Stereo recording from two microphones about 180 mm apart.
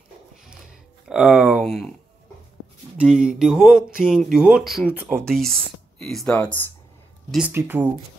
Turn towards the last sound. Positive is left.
turn(degrees=-10)  # may be behind; listen again after turning